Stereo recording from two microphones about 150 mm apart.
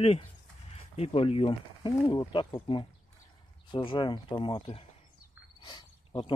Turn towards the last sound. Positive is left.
turn(degrees=30)  # may be behind; listen again after turning